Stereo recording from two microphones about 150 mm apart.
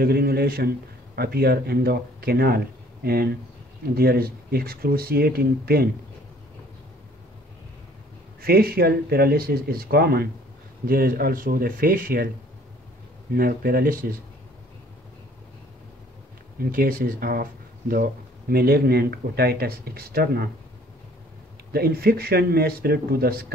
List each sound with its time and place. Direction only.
0.0 s speech: 90° right
8.4 s speech: 90° right; by 12.3 s 70° right (ahead or behind)
13.3 s speech: 80° right
16.5 s speech: 75° right (ahead or behind)
21.7 s speech: 90° right